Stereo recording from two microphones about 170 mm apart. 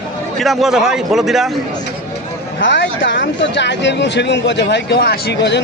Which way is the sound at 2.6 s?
90° left.